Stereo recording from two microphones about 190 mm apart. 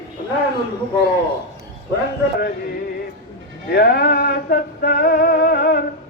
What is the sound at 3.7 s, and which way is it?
Music, 55° left (ahead or behind).